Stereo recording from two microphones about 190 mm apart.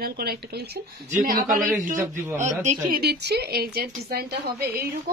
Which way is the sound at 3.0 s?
60° right (ahead or behind).